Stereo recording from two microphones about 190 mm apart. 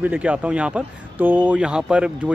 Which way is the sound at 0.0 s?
5° right (ahead or behind).